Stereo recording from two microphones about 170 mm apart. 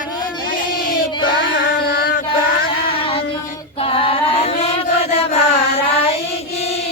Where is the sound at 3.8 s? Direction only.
35° left (ahead or behind).